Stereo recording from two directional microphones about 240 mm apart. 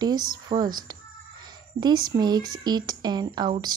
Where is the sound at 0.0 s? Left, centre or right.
Centre.